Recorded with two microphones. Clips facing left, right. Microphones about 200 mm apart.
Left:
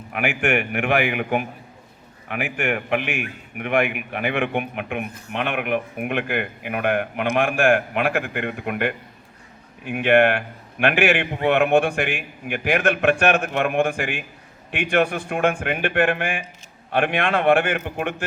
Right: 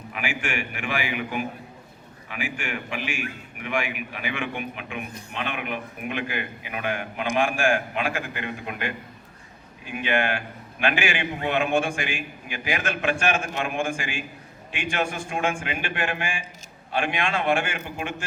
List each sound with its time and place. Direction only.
0.1 s a man's voice: 60° left (ahead or behind)